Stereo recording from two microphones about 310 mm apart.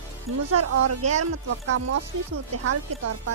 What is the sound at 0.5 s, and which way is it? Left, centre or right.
Speech, right.